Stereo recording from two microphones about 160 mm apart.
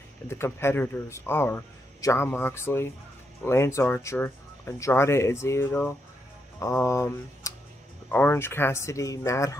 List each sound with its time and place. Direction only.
0.3 s speech: 15° left (ahead or behind)